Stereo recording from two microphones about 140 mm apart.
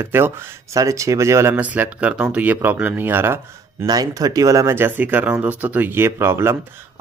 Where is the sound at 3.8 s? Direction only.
30° right (ahead or behind).